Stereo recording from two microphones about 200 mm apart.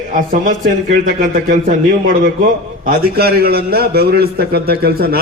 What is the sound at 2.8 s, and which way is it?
A man's voice, 50° right (ahead or behind).